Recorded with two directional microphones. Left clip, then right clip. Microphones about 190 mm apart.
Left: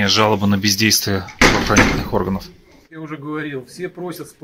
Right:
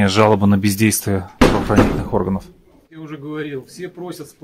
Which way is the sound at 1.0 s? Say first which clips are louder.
Left 1 dB; 15° right (ahead or behind).